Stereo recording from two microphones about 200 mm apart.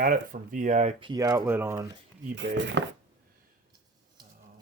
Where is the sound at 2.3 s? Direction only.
60° right (ahead or behind).